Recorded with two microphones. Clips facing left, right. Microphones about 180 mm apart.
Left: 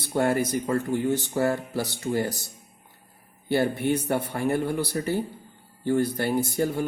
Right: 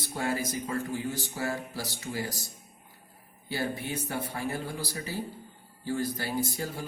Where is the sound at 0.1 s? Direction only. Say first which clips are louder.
Left 8 dB; 65° left (ahead or behind).